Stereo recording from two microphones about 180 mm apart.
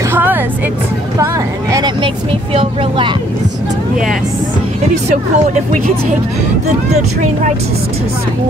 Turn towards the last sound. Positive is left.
turn(degrees=-40)  # may be behind; listen again after turning